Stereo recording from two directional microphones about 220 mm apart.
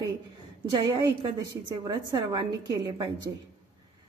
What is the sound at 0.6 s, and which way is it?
A woman's voice, 20° right (ahead or behind).